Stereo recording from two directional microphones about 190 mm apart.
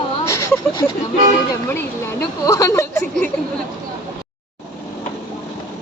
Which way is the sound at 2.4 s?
15° left (ahead or behind).